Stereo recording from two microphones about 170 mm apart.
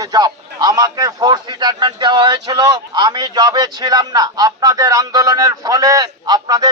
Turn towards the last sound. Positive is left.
turn(degrees=-25)  # may be behind; listen again after turning